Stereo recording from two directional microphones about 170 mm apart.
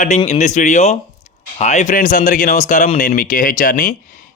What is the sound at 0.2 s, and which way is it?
Speech, 40° left (ahead or behind).